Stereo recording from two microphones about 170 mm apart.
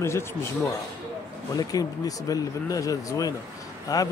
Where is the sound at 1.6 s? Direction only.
20° left (ahead or behind).